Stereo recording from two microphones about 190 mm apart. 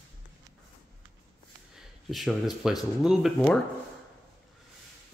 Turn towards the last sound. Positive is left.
turn(degrees=5)  # may be behind; listen again after turning